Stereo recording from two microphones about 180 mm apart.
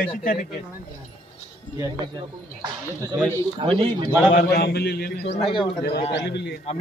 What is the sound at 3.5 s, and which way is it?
Speech, 30° right (ahead or behind).